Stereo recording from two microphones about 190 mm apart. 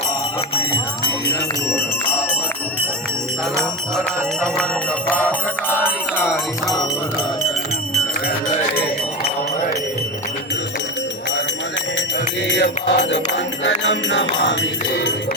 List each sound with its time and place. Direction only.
3.6 s music: 5° left (ahead or behind)
12.5 s music: 65° left (ahead or behind)